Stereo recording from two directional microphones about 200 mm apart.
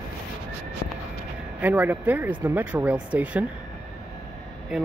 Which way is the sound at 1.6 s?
10° right (ahead or behind).